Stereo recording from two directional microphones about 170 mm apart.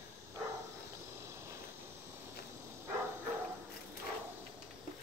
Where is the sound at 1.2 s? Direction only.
15° right (ahead or behind).